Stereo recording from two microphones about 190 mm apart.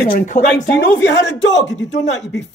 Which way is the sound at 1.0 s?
70° left (ahead or behind).